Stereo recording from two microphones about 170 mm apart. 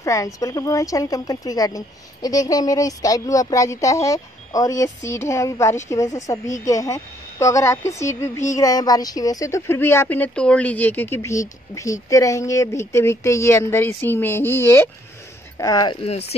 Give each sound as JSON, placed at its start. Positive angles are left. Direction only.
{"t": 0.0, "sound": "speech", "side_deg": 20}